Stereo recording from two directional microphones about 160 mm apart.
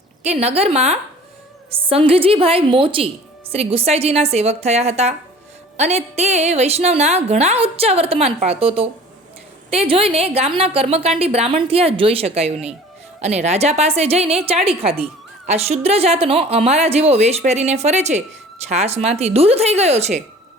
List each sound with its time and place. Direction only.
0.2 s a woman's voice: 40° right (ahead or behind)